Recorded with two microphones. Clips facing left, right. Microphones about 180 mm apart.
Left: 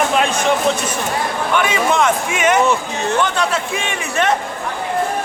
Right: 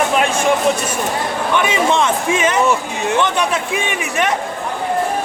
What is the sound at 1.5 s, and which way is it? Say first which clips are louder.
Speech: right 1 dB; 25° right (ahead or behind).